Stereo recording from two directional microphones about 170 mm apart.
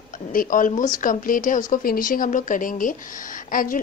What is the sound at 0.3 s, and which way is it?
A woman's voice, 50° left (ahead or behind).